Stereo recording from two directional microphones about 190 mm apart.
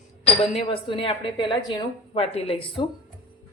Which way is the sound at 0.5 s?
25° left (ahead or behind).